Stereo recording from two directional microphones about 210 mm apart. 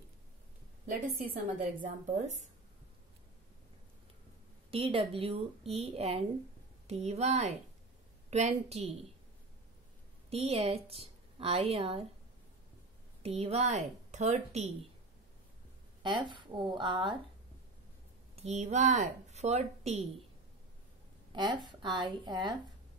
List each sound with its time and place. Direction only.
0.8 s a woman's voice: 40° right (ahead or behind)
4.6 s a woman's voice: 25° right (ahead or behind)
10.3 s a woman's voice: 30° right (ahead or behind)
13.2 s a woman's voice: 30° right (ahead or behind)
16.0 s a woman's voice: 20° right (ahead or behind)
18.3 s speech: 30° right (ahead or behind)
21.5 s a woman's voice: 20° right (ahead or behind)